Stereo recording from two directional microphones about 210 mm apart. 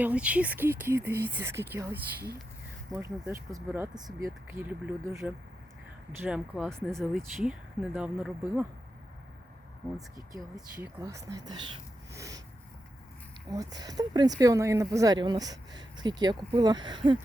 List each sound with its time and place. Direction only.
0.0 s speech: 5° right (ahead or behind)
11.0 s speech: 15° right (ahead or behind)
12.1 s a sound: 15° right (ahead or behind)
13.5 s speech: 15° right (ahead or behind)